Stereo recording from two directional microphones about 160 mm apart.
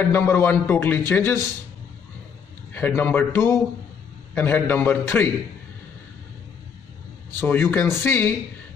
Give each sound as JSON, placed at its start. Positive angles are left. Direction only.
{"t": 0.1, "sound": "a man's voice", "side_deg": 15}
{"t": 2.7, "sound": "a man's voice", "side_deg": 10}
{"t": 7.3, "sound": "a man's voice", "side_deg": 15}